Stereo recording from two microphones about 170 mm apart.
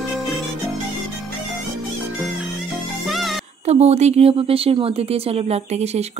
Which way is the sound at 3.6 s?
40° right (ahead or behind).